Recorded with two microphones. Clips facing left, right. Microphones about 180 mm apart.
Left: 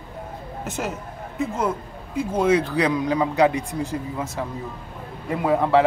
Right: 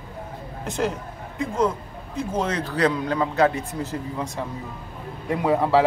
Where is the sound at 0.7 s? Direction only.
5° left (ahead or behind).